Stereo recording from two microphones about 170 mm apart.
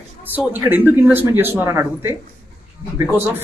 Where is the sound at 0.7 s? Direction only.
10° right (ahead or behind).